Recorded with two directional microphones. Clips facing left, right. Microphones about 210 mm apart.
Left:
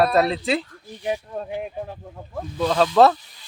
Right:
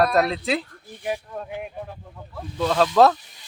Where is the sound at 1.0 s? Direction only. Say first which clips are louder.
Left 2 dB; 25° left (ahead or behind).